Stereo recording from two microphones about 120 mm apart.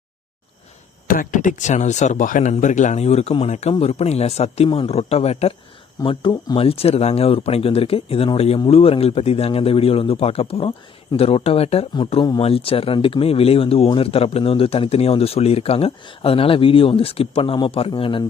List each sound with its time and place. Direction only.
1.3 s speech: 90° left; by 5.5 s 60° left (ahead or behind)
6.0 s speech: 40° left (ahead or behind)